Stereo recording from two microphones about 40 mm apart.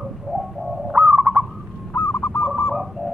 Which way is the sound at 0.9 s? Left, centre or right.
Right.